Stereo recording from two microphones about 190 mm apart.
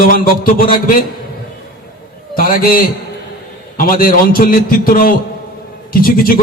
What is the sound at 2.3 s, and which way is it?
Speech, 50° left (ahead or behind).